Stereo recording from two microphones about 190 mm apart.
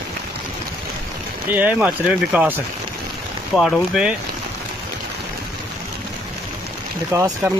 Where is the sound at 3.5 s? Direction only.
Centre (ahead or behind).